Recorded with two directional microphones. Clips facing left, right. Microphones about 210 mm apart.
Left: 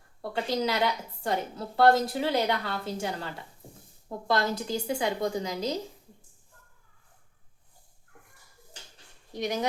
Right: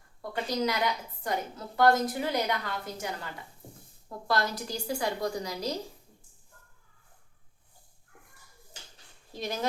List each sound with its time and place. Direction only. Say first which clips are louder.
0.2 s a woman's voice: left 2 dB; 30° left (ahead or behind)
4.3 s a woman's voice: left 3 dB; 25° left (ahead or behind)
9.3 s speech: left 4 dB; 15° left (ahead or behind)